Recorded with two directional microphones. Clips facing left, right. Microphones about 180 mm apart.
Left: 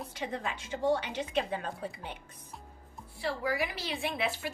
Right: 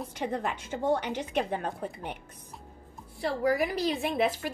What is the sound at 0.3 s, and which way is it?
Speech, 55° right (ahead or behind).